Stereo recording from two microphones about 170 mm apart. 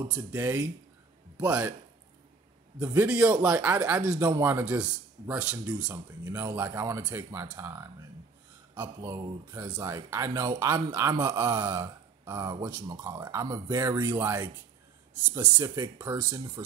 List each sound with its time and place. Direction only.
0.1 s speech: 10° right (ahead or behind)
2.8 s speech: 10° right (ahead or behind)
5.9 s speech: 20° right (ahead or behind)
11.4 s a sound: 20° right (ahead or behind)
12.6 s speech: 20° right (ahead or behind)
15.5 s speech: 25° right (ahead or behind)